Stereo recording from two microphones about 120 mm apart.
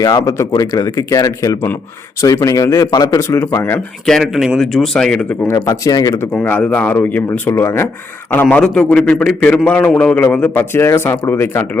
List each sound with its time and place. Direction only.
0.0 s speech: 30° left (ahead or behind)
4.0 s speech: centre (ahead or behind)
5.5 s speech: 30° left (ahead or behind)
6.3 s a man's voice: 15° left (ahead or behind)